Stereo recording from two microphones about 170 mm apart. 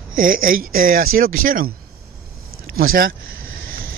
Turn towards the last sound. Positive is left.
turn(degrees=-60)  # may be behind; listen again after turning